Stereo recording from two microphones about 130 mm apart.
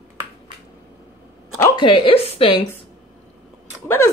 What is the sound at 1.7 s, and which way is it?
Speech, 40° left (ahead or behind).